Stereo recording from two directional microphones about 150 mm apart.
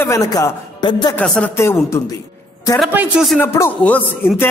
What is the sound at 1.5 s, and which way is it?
Speech, 15° left (ahead or behind).